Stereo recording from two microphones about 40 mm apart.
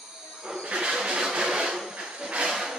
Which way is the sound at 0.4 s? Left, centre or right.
Centre.